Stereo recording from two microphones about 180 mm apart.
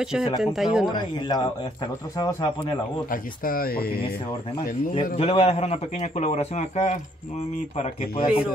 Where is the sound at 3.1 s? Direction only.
50° left (ahead or behind).